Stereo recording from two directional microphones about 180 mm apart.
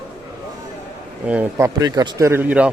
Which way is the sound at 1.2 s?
10° right (ahead or behind).